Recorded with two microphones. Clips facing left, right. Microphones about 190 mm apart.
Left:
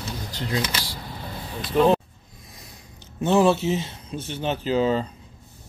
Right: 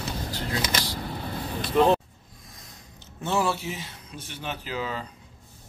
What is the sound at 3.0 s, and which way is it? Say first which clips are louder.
Speech: left 8 dB; 20° left (ahead or behind).